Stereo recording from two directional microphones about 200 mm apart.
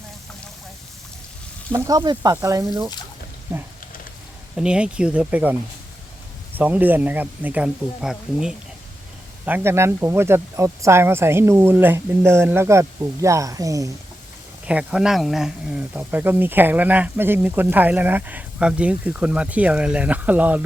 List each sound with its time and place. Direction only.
1.7 s speech: 20° right (ahead or behind)
6.6 s speech: 10° right (ahead or behind)
14.7 s speech: 5° right (ahead or behind)